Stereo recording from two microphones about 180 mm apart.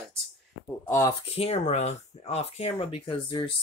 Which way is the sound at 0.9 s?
15° left (ahead or behind).